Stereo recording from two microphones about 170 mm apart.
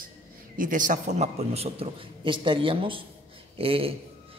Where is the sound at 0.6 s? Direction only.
50° right (ahead or behind).